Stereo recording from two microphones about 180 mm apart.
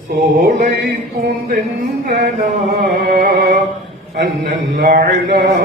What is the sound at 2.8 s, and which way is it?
Music, 55° right (ahead or behind).